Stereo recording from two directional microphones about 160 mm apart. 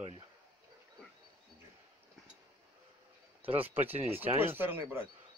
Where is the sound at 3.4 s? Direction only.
35° right (ahead or behind).